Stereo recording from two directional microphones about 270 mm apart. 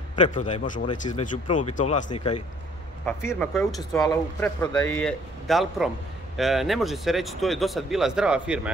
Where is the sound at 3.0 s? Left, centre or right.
Centre.